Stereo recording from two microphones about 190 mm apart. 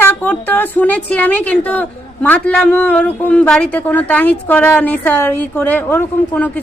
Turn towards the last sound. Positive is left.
turn(degrees=10)  # may be behind; listen again after turning